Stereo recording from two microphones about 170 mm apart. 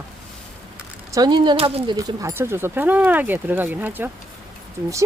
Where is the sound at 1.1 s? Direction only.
25° right (ahead or behind).